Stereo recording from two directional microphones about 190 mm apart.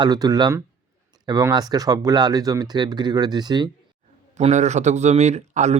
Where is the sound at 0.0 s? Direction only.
20° right (ahead or behind).